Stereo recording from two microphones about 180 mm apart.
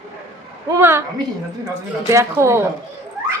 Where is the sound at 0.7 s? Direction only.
15° right (ahead or behind).